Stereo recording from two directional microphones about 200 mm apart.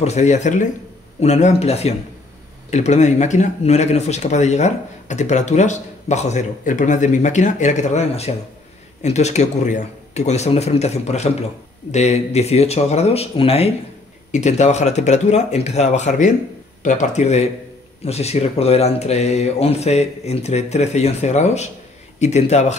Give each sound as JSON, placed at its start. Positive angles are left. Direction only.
{"t": 0.0, "sound": "speech", "side_deg": 35}